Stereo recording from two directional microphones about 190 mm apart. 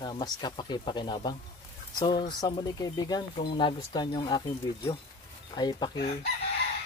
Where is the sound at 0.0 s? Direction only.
20° left (ahead or behind).